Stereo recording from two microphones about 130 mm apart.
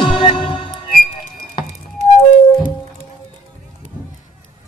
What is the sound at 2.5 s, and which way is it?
Music, 40° left (ahead or behind).